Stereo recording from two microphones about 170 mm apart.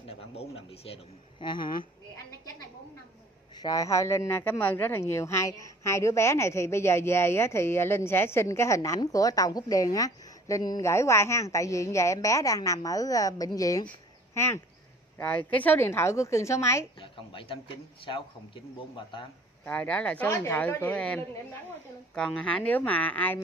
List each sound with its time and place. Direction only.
0.0 s speech: 35° left (ahead or behind)
3.6 s speech: 20° left (ahead or behind)
13.8 s a sound: 15° left (ahead or behind)
15.1 s speech: 10° left (ahead or behind)
17.0 s a man's voice: 30° left (ahead or behind)
19.6 s speech: 10° left (ahead or behind)